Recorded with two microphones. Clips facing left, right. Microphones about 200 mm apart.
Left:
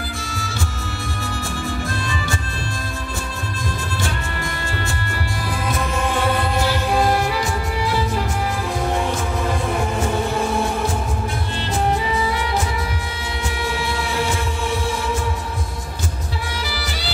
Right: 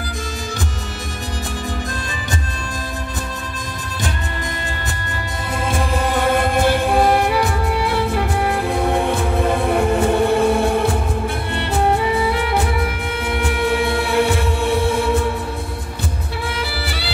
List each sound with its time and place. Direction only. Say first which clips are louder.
6.4 s music: right 4 dB; 55° right (ahead or behind)
16.7 s music: right 2 dB; 60° right (ahead or behind)